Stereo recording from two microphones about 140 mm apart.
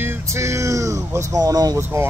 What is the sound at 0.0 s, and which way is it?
Speech, 20° right (ahead or behind).